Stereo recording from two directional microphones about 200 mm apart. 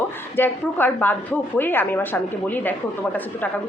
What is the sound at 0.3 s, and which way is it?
A woman's voice, 10° left (ahead or behind).